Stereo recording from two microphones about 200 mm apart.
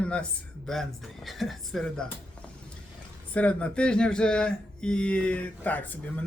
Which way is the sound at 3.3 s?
5° left (ahead or behind).